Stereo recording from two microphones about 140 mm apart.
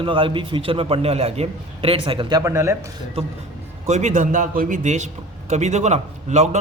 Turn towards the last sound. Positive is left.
turn(degrees=-55)  # may be behind; listen again after turning